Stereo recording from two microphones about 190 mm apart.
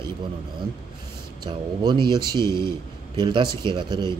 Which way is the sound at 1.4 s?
25° right (ahead or behind).